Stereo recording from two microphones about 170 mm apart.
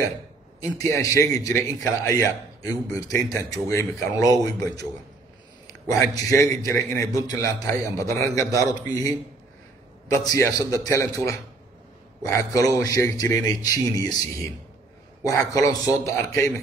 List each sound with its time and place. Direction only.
0.7 s a man's voice: 15° left (ahead or behind)
5.9 s a man's voice: 20° left (ahead or behind)